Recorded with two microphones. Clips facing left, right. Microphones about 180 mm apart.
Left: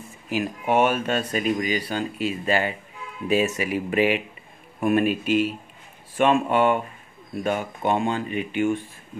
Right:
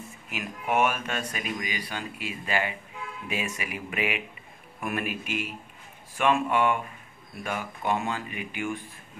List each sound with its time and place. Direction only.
0.3 s speech: 30° left (ahead or behind)